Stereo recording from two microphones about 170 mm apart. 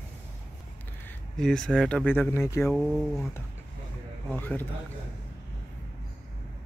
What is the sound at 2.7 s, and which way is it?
Speech, centre (ahead or behind).